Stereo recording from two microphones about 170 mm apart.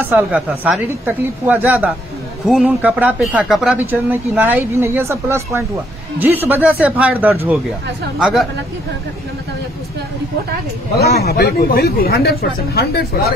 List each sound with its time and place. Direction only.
0.1 s a woman's voice: 5° right (ahead or behind)
11.0 s speech: 70° left (ahead or behind)